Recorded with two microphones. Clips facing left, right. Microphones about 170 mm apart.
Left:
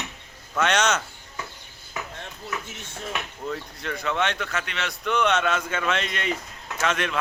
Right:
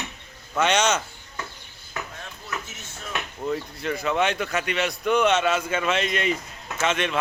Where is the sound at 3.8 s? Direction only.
10° right (ahead or behind).